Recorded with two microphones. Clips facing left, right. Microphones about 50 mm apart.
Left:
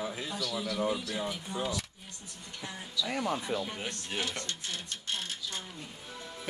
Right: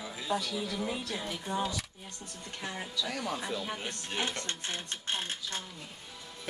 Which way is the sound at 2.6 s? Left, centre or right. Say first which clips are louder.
Right 1 dB; right.